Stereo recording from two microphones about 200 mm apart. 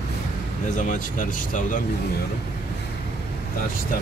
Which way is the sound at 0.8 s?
40° left (ahead or behind).